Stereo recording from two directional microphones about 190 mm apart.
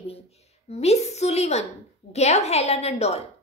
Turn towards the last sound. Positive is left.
turn(degrees=35)  # may be behind; listen again after turning